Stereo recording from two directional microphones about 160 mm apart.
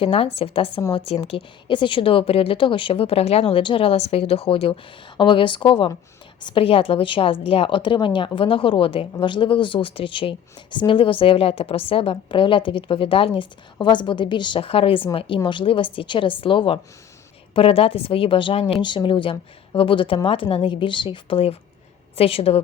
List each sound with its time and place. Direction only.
0.0 s speech: 35° left (ahead or behind)